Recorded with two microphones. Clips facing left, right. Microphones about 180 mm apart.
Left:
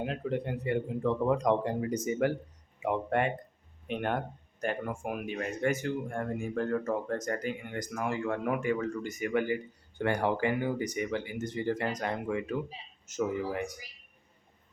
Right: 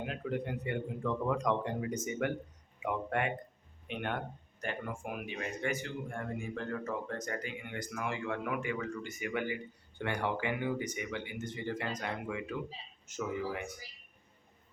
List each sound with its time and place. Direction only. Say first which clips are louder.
0.0 s speech: left 4 dB; 35° left (ahead or behind)